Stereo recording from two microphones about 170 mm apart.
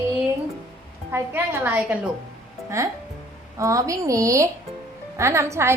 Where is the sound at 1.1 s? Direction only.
15° right (ahead or behind).